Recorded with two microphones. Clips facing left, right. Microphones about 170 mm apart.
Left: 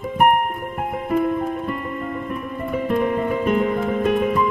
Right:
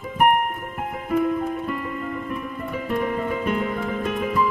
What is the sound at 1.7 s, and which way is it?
Music, 40° left (ahead or behind).